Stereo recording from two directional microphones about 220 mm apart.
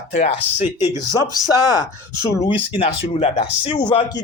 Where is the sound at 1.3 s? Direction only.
15° left (ahead or behind).